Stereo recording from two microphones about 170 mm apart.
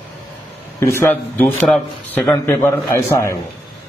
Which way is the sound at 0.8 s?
15° left (ahead or behind).